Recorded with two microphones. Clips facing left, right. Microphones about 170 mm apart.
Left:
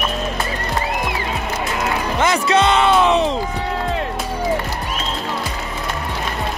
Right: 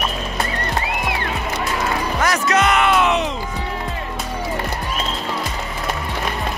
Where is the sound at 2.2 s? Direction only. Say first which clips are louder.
Left 3 dB; 25° left (ahead or behind).